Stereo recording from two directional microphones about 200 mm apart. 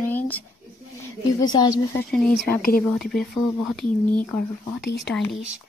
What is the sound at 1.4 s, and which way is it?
Speech, 20° left (ahead or behind).